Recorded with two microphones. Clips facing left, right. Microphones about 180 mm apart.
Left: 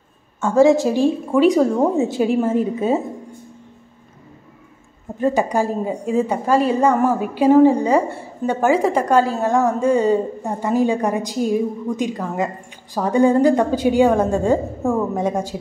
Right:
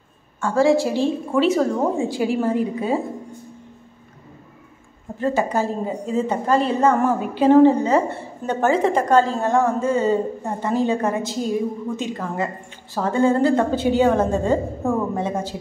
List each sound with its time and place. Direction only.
0.4 s a woman's voice: 20° left (ahead or behind)
5.2 s a woman's voice: 15° left (ahead or behind)